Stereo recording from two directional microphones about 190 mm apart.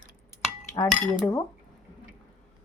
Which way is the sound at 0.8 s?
20° left (ahead or behind).